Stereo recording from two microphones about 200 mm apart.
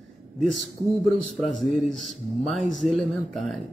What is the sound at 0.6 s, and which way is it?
A man's voice, centre (ahead or behind).